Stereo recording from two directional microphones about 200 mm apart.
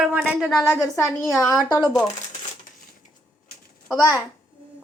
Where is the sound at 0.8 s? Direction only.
15° left (ahead or behind).